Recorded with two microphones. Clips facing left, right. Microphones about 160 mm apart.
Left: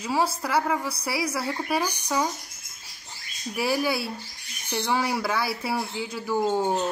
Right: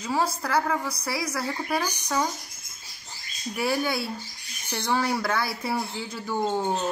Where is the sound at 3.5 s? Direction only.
5° left (ahead or behind).